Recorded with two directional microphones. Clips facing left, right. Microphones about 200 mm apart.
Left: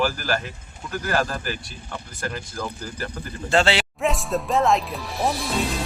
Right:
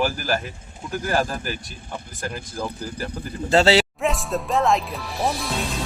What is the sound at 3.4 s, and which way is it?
Speech, 35° right (ahead or behind).